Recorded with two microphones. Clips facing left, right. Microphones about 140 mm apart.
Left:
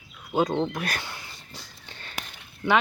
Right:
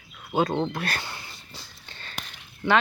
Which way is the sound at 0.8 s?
15° left (ahead or behind).